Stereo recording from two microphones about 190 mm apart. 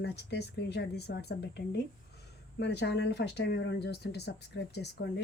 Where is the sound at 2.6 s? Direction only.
65° left (ahead or behind).